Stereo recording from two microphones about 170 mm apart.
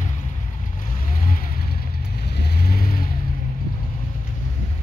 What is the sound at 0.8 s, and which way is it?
Vehicle, 50° left (ahead or behind).